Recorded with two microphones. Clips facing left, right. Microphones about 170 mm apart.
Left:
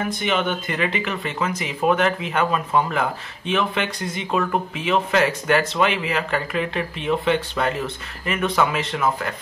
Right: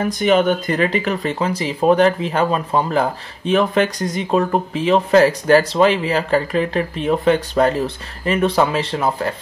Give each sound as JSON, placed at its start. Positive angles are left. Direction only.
{"t": 0.0, "sound": "speech", "side_deg": -40}